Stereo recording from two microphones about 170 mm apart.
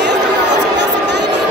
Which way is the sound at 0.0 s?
85° right.